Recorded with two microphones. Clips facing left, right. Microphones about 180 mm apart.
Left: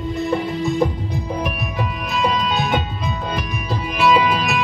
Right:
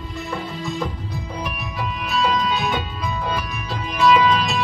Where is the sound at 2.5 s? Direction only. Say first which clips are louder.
Left 3 dB; 50° left (ahead or behind).